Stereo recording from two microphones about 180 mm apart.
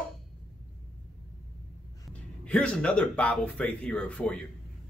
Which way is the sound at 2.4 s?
5° left (ahead or behind).